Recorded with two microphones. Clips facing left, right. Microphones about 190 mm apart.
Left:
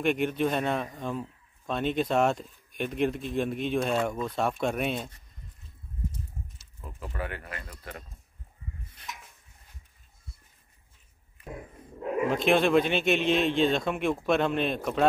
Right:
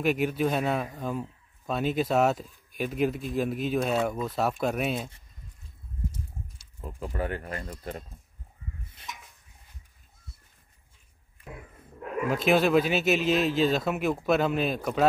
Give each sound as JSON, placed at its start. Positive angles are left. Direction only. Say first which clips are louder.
{"t": 0.0, "sound": "speech", "louder": "even", "side_deg": -5}
{"t": 7.1, "sound": "speech", "louder": "right 4 dB", "side_deg": -35}
{"t": 12.3, "sound": "speech", "louder": "right 1 dB", "side_deg": -5}